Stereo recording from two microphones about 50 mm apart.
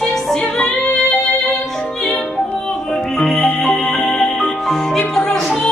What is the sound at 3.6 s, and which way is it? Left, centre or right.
Music, centre.